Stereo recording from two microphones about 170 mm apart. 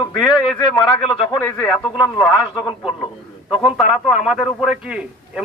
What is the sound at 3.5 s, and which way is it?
A man's voice, 5° right (ahead or behind).